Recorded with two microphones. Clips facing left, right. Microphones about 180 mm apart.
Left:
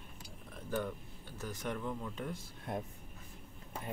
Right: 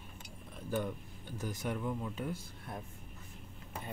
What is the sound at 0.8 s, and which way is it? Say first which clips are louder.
Speech: right 1 dB; 15° right (ahead or behind).